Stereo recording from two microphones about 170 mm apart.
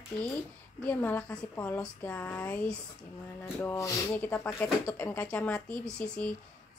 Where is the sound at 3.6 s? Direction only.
20° left (ahead or behind).